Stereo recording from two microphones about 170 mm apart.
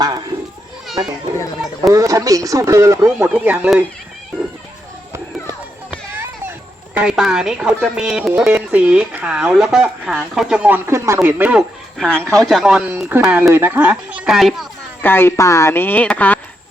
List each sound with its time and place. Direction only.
0.3 s children playing: 30° right (ahead or behind)
1.9 s speech: 20° right (ahead or behind)
6.9 s speech: 5° right (ahead or behind)
12.4 s speech: centre (ahead or behind)
15.0 s speech: 15° left (ahead or behind)